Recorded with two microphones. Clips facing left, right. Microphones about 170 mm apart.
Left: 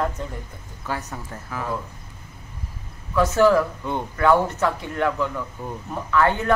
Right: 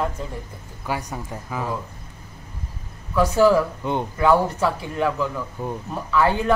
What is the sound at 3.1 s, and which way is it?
Speech, 10° right (ahead or behind).